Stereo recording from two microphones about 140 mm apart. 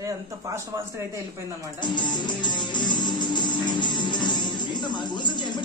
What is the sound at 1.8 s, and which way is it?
Music, 35° left (ahead or behind).